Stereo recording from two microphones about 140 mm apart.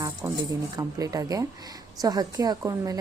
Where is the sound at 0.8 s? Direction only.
25° right (ahead or behind).